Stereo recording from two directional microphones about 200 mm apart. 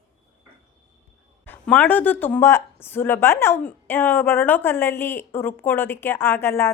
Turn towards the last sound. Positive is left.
turn(degrees=10)  # may be behind; listen again after turning